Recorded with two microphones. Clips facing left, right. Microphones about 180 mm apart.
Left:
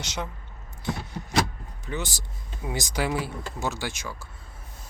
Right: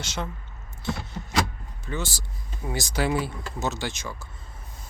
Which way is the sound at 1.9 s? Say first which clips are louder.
Right 1 dB; 15° left (ahead or behind).